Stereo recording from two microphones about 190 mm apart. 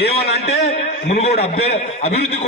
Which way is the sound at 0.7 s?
35° left (ahead or behind).